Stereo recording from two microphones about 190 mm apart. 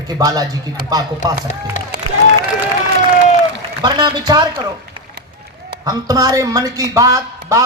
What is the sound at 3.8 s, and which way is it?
Speech, 25° right (ahead or behind).